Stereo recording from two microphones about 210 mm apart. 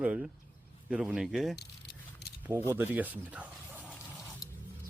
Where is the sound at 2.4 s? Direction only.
10° right (ahead or behind).